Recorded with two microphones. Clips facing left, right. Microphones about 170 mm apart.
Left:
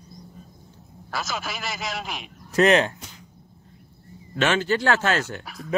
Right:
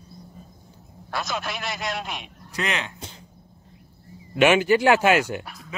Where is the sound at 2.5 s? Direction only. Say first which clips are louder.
Left 11 dB; 40° left (ahead or behind).